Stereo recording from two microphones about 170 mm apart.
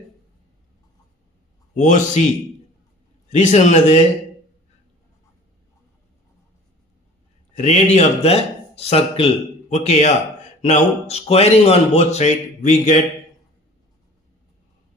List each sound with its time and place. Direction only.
1.7 s a man's voice: 45° left (ahead or behind)
3.2 s a man's voice: 40° left (ahead or behind)
7.5 s speech: 45° left (ahead or behind)